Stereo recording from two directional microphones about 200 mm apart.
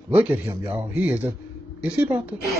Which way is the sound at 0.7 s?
10° right (ahead or behind).